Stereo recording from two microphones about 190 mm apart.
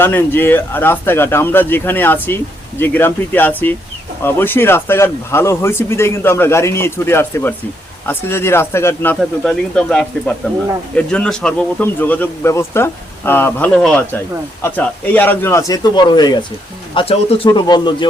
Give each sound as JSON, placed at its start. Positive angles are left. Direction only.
{"t": 0.0, "sound": "speech", "side_deg": 10}